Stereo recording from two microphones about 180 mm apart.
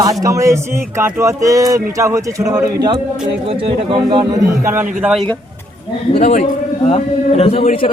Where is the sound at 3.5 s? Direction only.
30° right (ahead or behind); by 4.8 s 15° right (ahead or behind).